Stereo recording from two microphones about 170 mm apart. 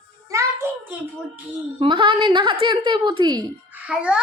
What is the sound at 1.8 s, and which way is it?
A woman's voice, 30° right (ahead or behind).